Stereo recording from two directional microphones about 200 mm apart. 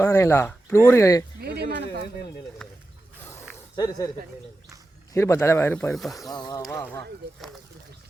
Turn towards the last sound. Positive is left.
turn(degrees=20)  # may be behind; listen again after turning